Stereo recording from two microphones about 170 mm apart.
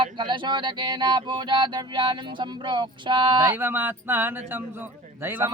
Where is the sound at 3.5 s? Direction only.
10° right (ahead or behind).